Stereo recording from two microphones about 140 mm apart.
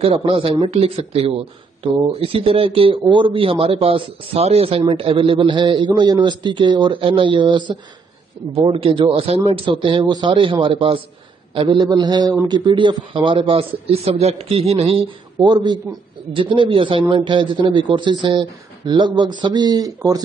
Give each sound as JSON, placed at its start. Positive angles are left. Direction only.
{"t": 0.0, "sound": "speech", "side_deg": -45}
{"t": 15.4, "sound": "speech", "side_deg": -35}